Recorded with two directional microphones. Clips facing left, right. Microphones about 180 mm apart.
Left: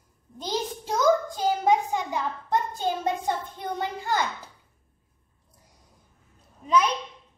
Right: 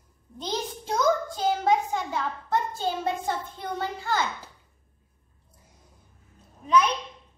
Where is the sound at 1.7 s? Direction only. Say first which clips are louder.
Left 1 dB; 15° left (ahead or behind).